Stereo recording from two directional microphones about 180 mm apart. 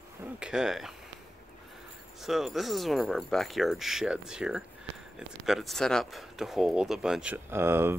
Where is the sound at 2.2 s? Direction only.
Centre (ahead or behind).